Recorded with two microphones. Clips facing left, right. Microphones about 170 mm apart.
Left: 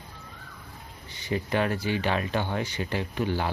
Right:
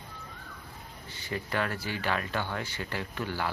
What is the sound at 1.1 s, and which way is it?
Speech, 20° left (ahead or behind).